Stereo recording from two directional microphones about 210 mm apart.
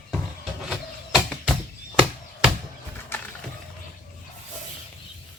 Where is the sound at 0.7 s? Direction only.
Centre (ahead or behind).